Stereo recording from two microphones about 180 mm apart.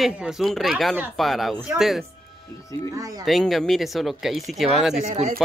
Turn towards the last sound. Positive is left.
turn(degrees=-40)  # may be behind; listen again after turning